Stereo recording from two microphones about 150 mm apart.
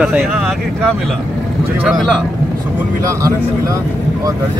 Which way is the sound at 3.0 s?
20° right (ahead or behind).